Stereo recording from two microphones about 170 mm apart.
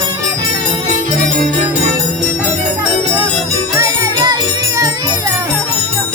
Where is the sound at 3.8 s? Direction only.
20° right (ahead or behind).